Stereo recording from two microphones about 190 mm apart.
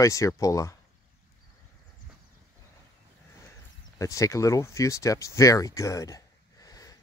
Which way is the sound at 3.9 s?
15° left (ahead or behind).